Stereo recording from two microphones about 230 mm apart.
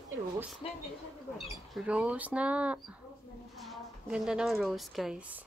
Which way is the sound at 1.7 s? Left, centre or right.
Centre.